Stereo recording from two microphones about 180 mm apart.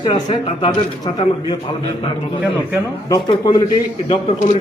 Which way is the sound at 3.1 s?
20° left (ahead or behind).